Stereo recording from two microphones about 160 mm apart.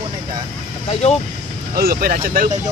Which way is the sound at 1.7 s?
65° right (ahead or behind).